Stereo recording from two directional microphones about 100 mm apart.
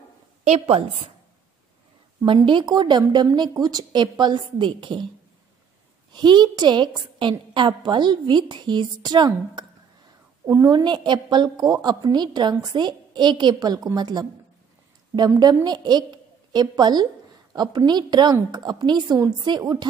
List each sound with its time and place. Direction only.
0.5 s a woman's voice: 90° right
2.2 s a woman's voice: 55° right (ahead or behind)
6.1 s a woman's voice: 50° right (ahead or behind)